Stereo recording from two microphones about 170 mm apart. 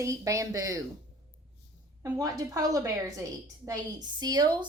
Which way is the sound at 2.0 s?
20° right (ahead or behind).